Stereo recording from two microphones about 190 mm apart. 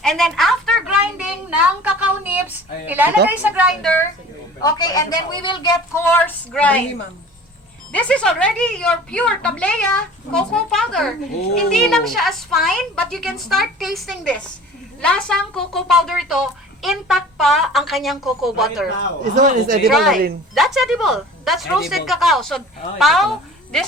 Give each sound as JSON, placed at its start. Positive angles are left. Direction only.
{"t": 0.0, "sound": "a sound", "side_deg": 0}
{"t": 2.8, "sound": "a woman's voice", "side_deg": -10}
{"t": 4.6, "sound": "a woman's voice", "side_deg": 20}
{"t": 7.9, "sound": "a woman's voice", "side_deg": 5}
{"t": 19.2, "sound": "speech", "side_deg": -45}
{"t": 19.9, "sound": "a woman's voice", "side_deg": 0}